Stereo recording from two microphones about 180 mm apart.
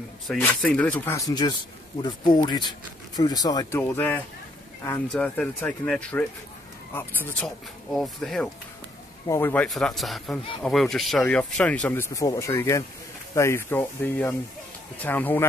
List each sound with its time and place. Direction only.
0.3 s speech: 5° left (ahead or behind)